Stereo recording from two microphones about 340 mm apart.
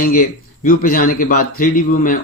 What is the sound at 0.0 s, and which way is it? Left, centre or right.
Speech, left.